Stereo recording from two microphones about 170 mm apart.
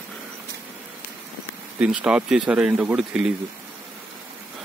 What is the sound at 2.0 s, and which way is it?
Speech, 5° right (ahead or behind).